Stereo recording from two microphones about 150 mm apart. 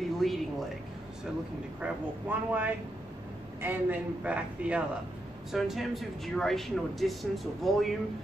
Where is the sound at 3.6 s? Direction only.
10° right (ahead or behind).